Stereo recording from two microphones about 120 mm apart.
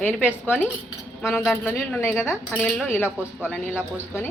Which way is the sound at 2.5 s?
5° left (ahead or behind).